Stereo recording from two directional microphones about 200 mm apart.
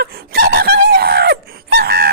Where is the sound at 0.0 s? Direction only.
50° right (ahead or behind).